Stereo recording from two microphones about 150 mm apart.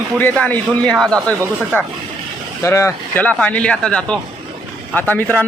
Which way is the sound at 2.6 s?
20° left (ahead or behind).